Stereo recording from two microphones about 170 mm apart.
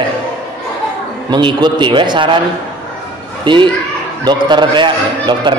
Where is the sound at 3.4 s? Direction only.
30° right (ahead or behind).